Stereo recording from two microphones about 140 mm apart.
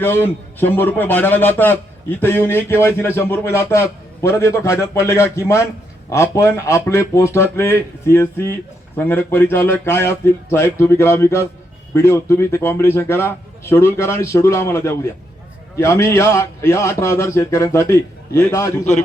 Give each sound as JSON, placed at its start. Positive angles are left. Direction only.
{"t": 0.0, "sound": "a man's voice", "side_deg": 15}